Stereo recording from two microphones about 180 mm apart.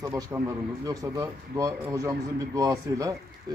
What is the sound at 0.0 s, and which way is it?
Speech, 15° right (ahead or behind).